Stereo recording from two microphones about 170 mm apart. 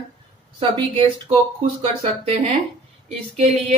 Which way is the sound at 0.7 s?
30° right (ahead or behind).